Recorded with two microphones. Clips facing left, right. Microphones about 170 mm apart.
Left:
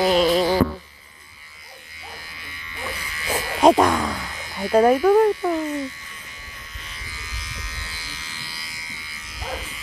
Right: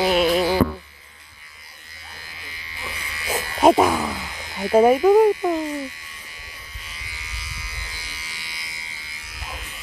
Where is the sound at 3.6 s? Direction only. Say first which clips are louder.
Even; 5° right (ahead or behind).